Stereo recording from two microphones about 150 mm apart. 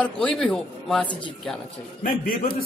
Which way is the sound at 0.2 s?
5° left (ahead or behind).